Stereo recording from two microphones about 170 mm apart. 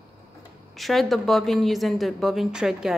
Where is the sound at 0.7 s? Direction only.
Centre (ahead or behind).